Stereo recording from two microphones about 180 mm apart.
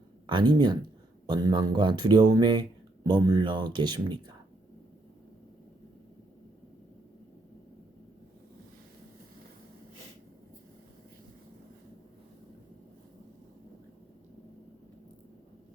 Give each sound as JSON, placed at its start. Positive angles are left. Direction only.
{"t": 0.3, "sound": "speech", "side_deg": -25}